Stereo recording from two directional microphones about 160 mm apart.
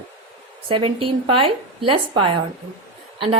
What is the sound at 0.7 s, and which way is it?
A woman's voice, 35° right (ahead or behind).